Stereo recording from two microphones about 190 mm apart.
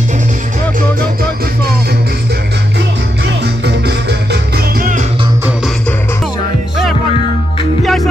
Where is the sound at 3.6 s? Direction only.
60° right (ahead or behind).